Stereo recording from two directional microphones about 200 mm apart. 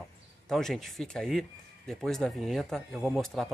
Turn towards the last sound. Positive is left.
turn(degrees=0)  # may be behind; listen again after turning